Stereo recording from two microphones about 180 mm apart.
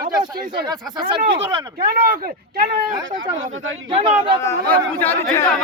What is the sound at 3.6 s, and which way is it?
Speech, 90° right.